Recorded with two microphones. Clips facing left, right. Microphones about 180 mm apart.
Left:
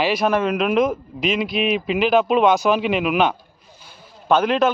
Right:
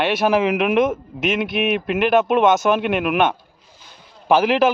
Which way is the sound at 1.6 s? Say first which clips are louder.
Even; 60° right (ahead or behind).